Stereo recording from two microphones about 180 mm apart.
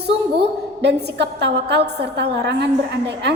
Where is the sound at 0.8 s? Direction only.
70° right (ahead or behind).